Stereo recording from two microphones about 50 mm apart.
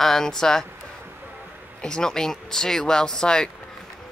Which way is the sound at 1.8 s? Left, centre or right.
Centre.